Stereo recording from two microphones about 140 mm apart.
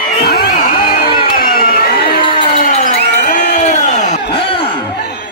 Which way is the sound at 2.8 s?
65° left (ahead or behind).